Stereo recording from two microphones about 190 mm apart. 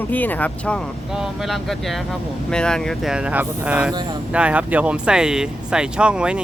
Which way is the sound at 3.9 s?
20° right (ahead or behind).